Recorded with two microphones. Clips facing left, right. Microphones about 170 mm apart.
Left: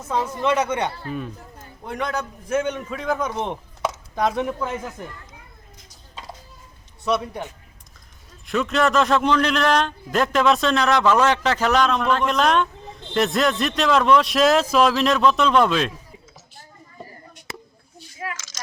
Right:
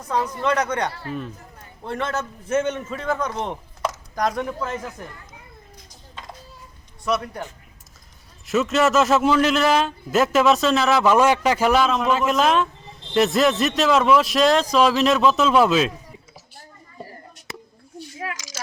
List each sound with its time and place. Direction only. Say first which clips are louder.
0.0 s speech: even; 25° left (ahead or behind)
0.4 s a man's voice: left 2 dB; 10° left (ahead or behind)
3.3 s speech: left 1 dB; 15° left (ahead or behind)
3.8 s a sound: left 1 dB; 5° left (ahead or behind)
4.4 s speech: left 2 dB; 20° left (ahead or behind)
8.4 s a man's voice: right 2 dB; 5° right (ahead or behind)
18.3 s a sound: right 4 dB; 10° right (ahead or behind)